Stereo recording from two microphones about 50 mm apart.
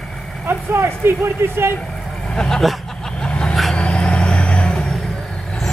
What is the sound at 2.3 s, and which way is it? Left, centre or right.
Speech, centre.